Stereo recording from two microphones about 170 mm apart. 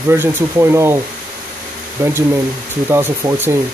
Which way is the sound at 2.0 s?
15° right (ahead or behind).